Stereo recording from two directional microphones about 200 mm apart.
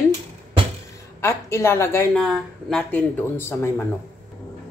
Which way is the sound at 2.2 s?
Centre (ahead or behind).